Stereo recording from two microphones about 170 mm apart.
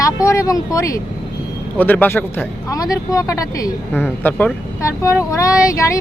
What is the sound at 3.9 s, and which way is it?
Speech, 10° left (ahead or behind).